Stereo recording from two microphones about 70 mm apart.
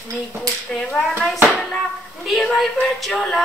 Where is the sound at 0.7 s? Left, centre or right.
Centre.